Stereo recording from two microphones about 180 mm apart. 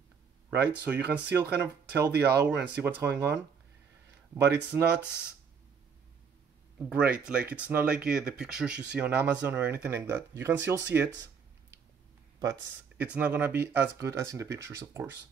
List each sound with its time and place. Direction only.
0.8 s speech: 10° right (ahead or behind)
4.6 s speech: 10° right (ahead or behind)
6.8 s speech: 5° right (ahead or behind)
12.4 s speech: 20° right (ahead or behind)
13.0 s speech: 10° right (ahead or behind)